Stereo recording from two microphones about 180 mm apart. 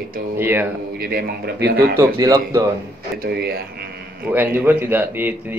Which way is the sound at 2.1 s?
20° right (ahead or behind).